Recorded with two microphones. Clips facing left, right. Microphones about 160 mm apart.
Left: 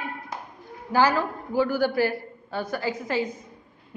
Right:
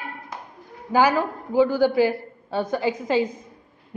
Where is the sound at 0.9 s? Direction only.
15° right (ahead or behind).